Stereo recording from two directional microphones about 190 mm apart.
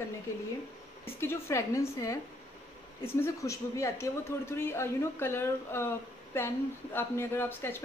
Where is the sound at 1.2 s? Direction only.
15° left (ahead or behind).